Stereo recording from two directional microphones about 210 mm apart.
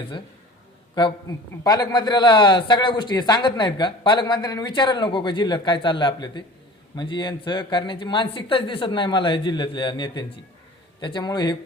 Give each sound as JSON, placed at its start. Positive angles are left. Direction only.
{"t": 1.6, "sound": "a man's voice", "side_deg": 20}